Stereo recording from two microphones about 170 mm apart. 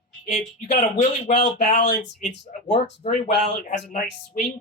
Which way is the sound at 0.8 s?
45° left (ahead or behind).